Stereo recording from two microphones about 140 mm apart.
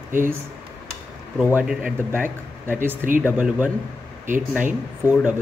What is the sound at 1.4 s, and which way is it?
Speech, 10° right (ahead or behind).